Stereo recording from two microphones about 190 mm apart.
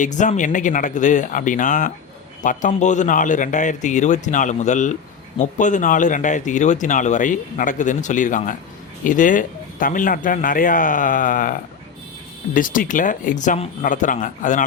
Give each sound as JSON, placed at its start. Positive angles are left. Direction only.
{"t": 0.0, "sound": "speech", "side_deg": 40}